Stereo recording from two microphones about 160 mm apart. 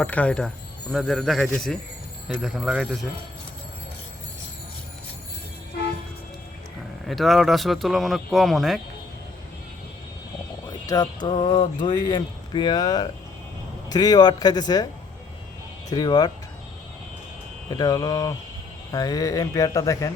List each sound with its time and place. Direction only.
0.0 s speech: 10° left (ahead or behind)
7.1 s speech: centre (ahead or behind)
10.8 s speech: 25° left (ahead or behind)
15.9 s speech: 25° left (ahead or behind)
17.7 s speech: 25° left (ahead or behind)